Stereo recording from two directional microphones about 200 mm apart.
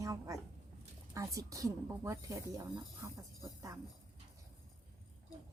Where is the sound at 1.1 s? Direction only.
15° right (ahead or behind).